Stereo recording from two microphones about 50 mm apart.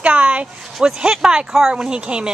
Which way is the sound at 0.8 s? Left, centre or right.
Centre.